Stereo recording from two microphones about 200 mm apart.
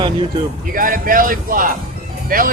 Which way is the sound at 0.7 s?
45° right (ahead or behind).